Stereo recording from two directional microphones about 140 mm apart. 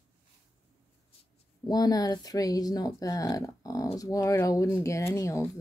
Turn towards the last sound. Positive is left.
turn(degrees=20)  # may be behind; listen again after turning